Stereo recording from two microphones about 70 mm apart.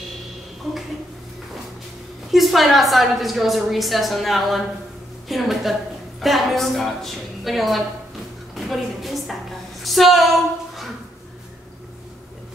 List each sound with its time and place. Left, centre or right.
2.3 s a woman's voice: centre